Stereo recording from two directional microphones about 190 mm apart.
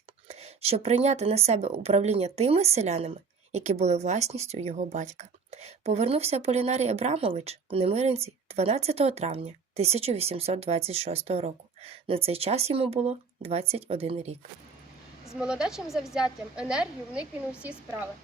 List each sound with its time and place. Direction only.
0.3 s speech: 30° right (ahead or behind)
15.4 s a woman's voice: 5° right (ahead or behind)